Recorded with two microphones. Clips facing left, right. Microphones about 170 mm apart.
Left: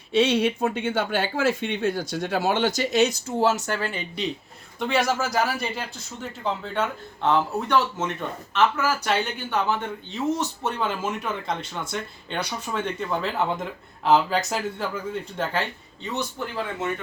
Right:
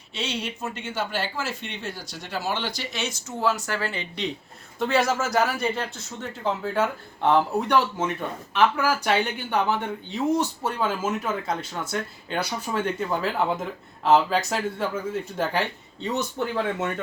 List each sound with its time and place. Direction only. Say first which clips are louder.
0.1 s speech: left 11 dB; 55° left (ahead or behind)
3.2 s speech: left 3 dB; 30° left (ahead or behind); by 4.3 s 10° left (ahead or behind)
4.8 s speech: right 1 dB; centre (ahead or behind)
6.4 s speech: right 2 dB; 10° right (ahead or behind)